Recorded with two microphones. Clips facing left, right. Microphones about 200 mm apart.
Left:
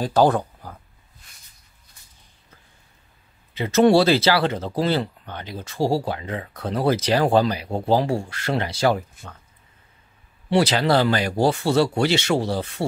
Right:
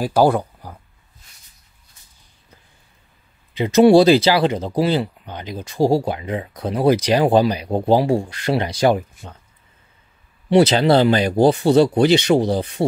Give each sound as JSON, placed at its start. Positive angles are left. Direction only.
{"t": 0.0, "sound": "speech", "side_deg": -10}
{"t": 3.5, "sound": "speech", "side_deg": -15}
{"t": 10.5, "sound": "speech", "side_deg": -20}